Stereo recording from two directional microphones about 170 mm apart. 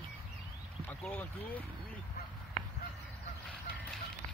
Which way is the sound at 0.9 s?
10° left (ahead or behind).